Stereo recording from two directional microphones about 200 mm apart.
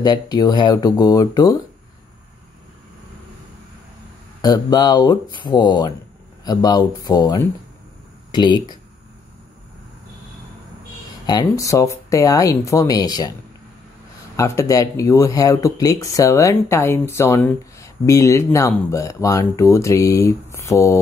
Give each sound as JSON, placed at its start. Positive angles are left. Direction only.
{"t": 0.0, "sound": "speech", "side_deg": 20}
{"t": 4.4, "sound": "speech", "side_deg": 20}
{"t": 11.2, "sound": "speech", "side_deg": 20}
{"t": 14.3, "sound": "speech", "side_deg": 15}